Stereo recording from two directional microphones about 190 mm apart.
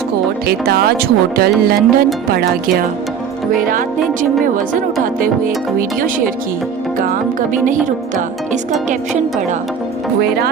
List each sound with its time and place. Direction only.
0.4 s speech: 55° right (ahead or behind)
4.2 s speech: 45° right (ahead or behind)
6.0 s speech: 45° right (ahead or behind)
7.6 s speech: 40° right (ahead or behind)